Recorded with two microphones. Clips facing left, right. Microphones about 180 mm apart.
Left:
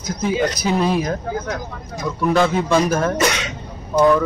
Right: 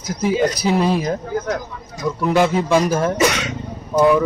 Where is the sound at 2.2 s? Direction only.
15° right (ahead or behind).